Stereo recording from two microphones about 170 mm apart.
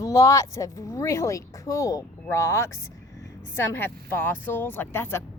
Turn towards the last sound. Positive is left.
turn(degrees=15)  # may be behind; listen again after turning